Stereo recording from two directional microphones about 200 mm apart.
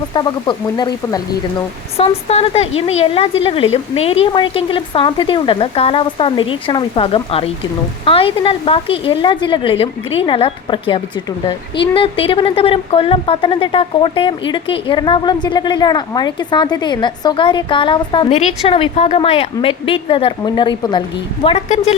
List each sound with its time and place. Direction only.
0.1 s speech: 20° left (ahead or behind)
2.0 s speech: 30° left (ahead or behind)